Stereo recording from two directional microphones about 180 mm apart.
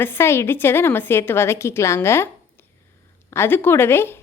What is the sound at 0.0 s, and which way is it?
A woman's voice, 15° left (ahead or behind).